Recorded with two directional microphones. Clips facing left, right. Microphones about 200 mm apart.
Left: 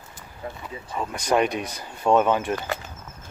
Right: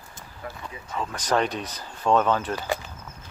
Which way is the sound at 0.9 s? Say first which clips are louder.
Left 2 dB; 10° left (ahead or behind).